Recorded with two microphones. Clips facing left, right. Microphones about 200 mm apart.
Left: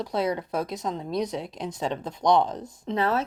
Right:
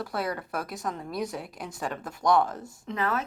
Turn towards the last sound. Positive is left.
turn(degrees=30)  # may be behind; listen again after turning